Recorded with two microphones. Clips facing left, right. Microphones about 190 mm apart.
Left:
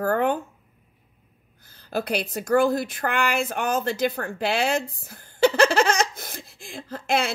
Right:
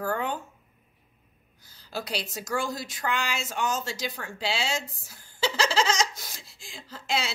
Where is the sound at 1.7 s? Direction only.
55° left (ahead or behind).